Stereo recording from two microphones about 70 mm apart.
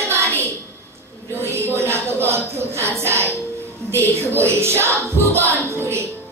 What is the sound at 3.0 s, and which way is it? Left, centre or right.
Speech, right.